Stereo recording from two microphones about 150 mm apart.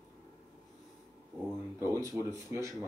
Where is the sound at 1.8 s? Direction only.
20° right (ahead or behind).